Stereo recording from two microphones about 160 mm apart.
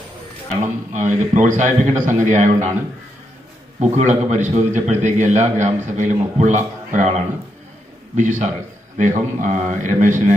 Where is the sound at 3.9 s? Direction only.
45° right (ahead or behind).